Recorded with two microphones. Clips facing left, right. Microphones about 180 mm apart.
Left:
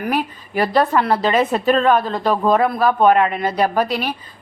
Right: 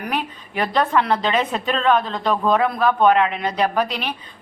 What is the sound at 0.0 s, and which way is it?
A woman's voice, 5° left (ahead or behind).